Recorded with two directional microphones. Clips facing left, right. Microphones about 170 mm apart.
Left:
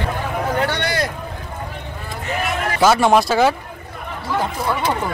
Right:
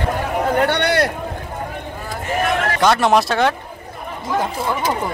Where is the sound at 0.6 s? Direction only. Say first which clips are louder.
Right 6 dB; 60° right (ahead or behind).